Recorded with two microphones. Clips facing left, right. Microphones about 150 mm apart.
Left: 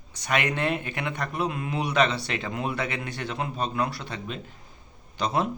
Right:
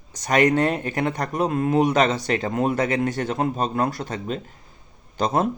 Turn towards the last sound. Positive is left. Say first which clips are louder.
# right 5 dB
turn(degrees=-45)  # may be behind; listen again after turning